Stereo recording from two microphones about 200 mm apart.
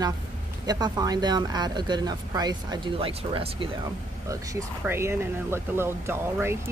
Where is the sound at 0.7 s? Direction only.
20° right (ahead or behind).